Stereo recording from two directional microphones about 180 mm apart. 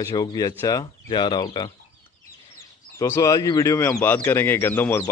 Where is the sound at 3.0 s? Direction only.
15° left (ahead or behind).